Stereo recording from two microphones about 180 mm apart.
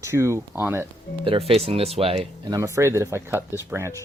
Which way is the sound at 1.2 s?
30° right (ahead or behind).